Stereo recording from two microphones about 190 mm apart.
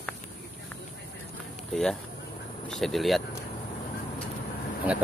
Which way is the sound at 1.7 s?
5° left (ahead or behind).